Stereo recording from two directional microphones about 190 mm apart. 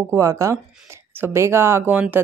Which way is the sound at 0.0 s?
15° right (ahead or behind).